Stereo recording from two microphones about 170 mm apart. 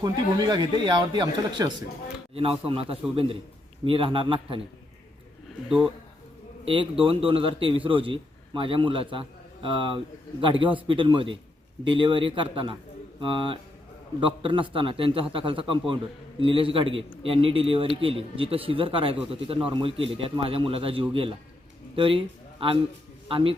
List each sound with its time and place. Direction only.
0.0 s a man's voice: 25° right (ahead or behind)
5.6 s speech: 5° right (ahead or behind)
6.7 s a man's voice: 30° right (ahead or behind)
23.3 s a man's voice: 30° right (ahead or behind)